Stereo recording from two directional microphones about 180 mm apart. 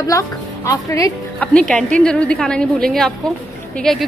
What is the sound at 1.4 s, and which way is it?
A woman's voice, 5° left (ahead or behind).